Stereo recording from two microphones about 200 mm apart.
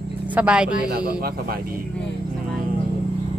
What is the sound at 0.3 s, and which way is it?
Speech, 5° right (ahead or behind).